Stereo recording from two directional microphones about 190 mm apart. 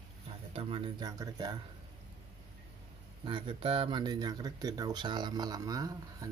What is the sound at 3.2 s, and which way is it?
Speech, 25° right (ahead or behind).